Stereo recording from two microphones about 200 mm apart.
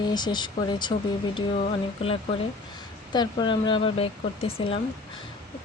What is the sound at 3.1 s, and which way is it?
A woman's voice, 20° left (ahead or behind).